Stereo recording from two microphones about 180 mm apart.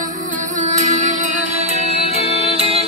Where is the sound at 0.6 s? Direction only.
40° right (ahead or behind).